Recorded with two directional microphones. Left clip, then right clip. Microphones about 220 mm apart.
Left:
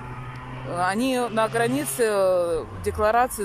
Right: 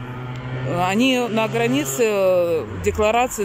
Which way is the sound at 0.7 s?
10° right (ahead or behind).